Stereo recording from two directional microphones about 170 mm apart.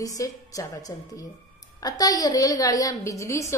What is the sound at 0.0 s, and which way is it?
A woman's voice, 20° left (ahead or behind).